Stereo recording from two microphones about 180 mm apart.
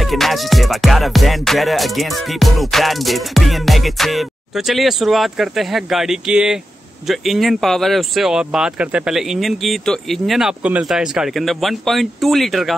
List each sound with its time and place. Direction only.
0.0 s music: centre (ahead or behind)